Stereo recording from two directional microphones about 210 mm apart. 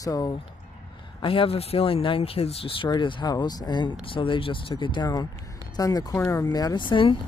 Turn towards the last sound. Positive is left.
turn(degrees=25)  # may be behind; listen again after turning